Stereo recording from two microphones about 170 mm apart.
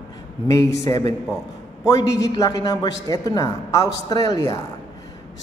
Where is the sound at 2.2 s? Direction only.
20° left (ahead or behind).